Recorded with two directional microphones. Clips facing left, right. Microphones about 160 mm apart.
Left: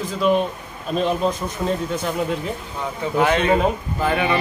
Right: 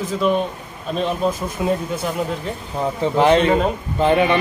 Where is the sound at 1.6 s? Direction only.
10° right (ahead or behind).